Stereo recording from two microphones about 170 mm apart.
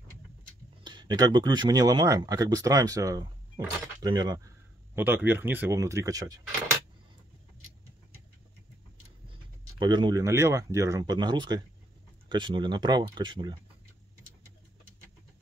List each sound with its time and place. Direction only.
0.8 s speech: 25° right (ahead or behind)
4.9 s speech: 10° right (ahead or behind)
9.3 s speech: 25° right (ahead or behind)